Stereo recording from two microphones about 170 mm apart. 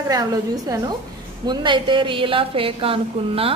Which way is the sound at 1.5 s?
30° right (ahead or behind).